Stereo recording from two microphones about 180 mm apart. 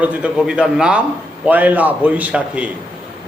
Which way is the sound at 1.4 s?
10° right (ahead or behind).